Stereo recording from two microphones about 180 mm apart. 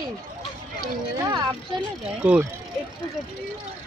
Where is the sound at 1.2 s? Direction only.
25° right (ahead or behind).